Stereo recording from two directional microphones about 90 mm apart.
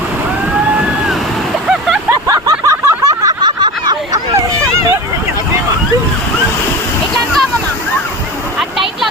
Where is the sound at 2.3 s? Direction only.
35° right (ahead or behind).